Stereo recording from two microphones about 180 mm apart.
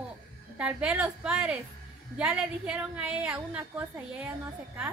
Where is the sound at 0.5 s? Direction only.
5° right (ahead or behind).